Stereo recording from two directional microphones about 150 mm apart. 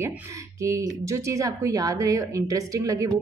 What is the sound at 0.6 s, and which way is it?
Speech, 20° right (ahead or behind).